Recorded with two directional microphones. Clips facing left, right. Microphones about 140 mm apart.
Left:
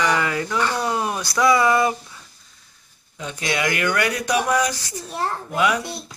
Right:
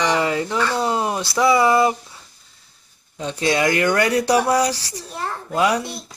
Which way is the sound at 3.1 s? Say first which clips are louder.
Right 5 dB; 35° right (ahead or behind).